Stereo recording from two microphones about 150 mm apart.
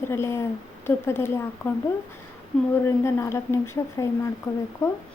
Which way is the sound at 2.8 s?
15° left (ahead or behind).